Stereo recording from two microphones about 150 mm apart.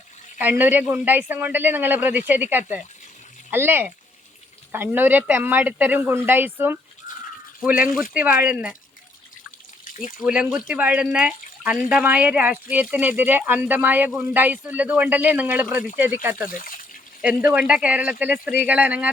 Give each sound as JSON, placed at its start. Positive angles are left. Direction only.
{"t": 0.3, "sound": "speech", "side_deg": -10}
{"t": 10.2, "sound": "speech", "side_deg": -5}
{"t": 16.6, "sound": "water", "side_deg": 65}
{"t": 17.2, "sound": "speech", "side_deg": -10}